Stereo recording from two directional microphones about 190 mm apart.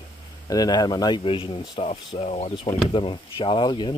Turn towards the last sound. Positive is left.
turn(degrees=25)  # may be behind; listen again after turning